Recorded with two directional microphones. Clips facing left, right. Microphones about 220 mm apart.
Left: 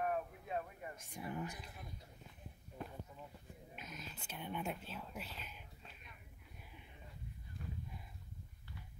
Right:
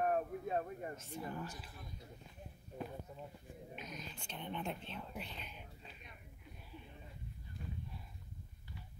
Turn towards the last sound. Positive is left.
turn(degrees=-25)  # may be behind; listen again after turning